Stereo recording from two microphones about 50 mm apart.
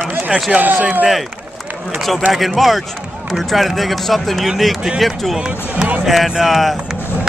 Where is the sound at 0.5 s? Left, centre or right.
Right.